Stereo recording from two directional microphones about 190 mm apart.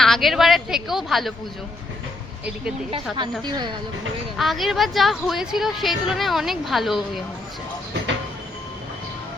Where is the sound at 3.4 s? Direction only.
20° right (ahead or behind).